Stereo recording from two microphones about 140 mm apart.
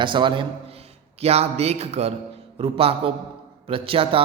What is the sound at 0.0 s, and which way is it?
A man's voice, 35° right (ahead or behind).